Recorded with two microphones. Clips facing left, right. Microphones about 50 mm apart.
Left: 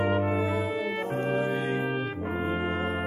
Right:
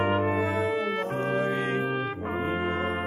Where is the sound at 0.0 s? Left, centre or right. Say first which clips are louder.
Right 1 dB; right.